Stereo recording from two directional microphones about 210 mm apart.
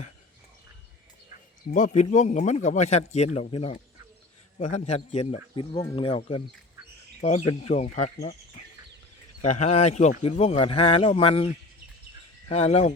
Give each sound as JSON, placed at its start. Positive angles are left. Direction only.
{"t": 1.7, "sound": "speech", "side_deg": 35}